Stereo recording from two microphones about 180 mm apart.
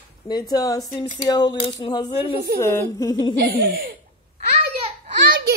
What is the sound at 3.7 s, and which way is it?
Speech, 55° right (ahead or behind).